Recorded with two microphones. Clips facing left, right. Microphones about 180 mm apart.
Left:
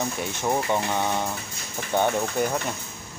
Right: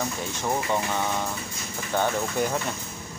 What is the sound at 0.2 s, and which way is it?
Speech, 15° left (ahead or behind).